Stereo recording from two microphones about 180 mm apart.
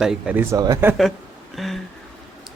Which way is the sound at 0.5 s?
20° right (ahead or behind).